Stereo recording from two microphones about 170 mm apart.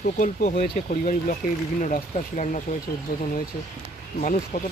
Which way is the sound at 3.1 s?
60° left (ahead or behind).